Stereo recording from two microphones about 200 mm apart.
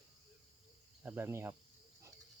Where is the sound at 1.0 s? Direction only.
10° right (ahead or behind).